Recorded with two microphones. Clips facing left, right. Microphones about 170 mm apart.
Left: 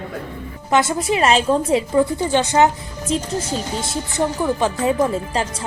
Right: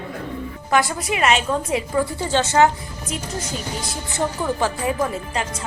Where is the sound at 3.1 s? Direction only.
30° left (ahead or behind).